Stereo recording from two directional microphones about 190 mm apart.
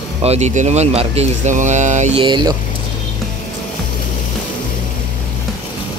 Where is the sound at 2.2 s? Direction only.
25° right (ahead or behind).